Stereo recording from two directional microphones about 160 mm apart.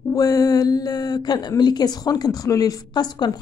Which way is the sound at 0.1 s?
20° left (ahead or behind).